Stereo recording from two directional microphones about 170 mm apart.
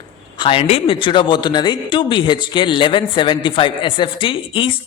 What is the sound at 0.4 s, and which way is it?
Speech, 35° left (ahead or behind).